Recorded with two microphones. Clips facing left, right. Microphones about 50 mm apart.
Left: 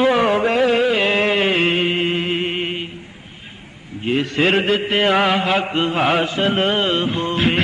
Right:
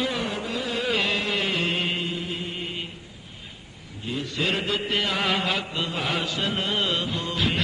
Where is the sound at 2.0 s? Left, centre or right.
Left.